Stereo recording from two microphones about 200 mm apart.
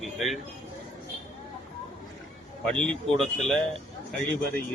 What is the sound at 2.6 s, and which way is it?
Speech, 5° left (ahead or behind).